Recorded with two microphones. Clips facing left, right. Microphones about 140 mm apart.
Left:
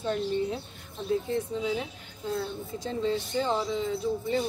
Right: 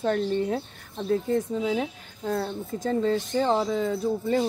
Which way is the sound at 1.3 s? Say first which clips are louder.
Right 4 dB; 40° right (ahead or behind).